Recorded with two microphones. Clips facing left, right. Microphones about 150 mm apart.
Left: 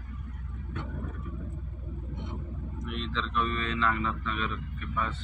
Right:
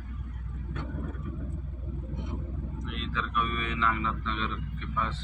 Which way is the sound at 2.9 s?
5° right (ahead or behind).